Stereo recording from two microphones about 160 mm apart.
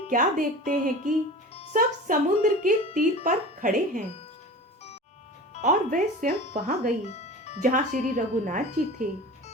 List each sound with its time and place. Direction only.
0.1 s speech: 55° right (ahead or behind)
5.6 s speech: 55° right (ahead or behind)
7.0 s music: 45° left (ahead or behind)
7.6 s speech: 50° right (ahead or behind)